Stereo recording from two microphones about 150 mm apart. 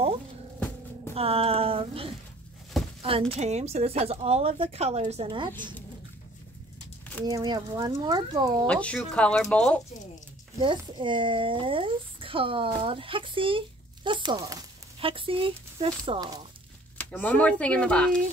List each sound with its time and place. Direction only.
1.1 s speech: 40° right (ahead or behind)
7.2 s speech: 25° right (ahead or behind)
8.6 s speech: 10° left (ahead or behind)
10.6 s speech: 35° right (ahead or behind)
15.0 s speech: 35° right (ahead or behind)
17.0 s speech: 10° left (ahead or behind)